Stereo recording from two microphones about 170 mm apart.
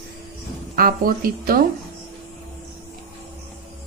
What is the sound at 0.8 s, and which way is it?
Speech, 60° right (ahead or behind).